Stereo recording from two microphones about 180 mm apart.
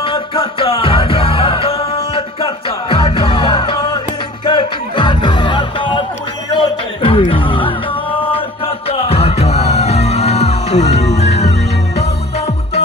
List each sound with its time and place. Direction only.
0.0 s music: 30° left (ahead or behind)